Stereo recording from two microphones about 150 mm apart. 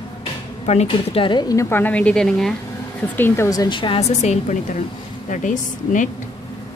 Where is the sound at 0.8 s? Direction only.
35° left (ahead or behind); by 2.5 s 5° left (ahead or behind).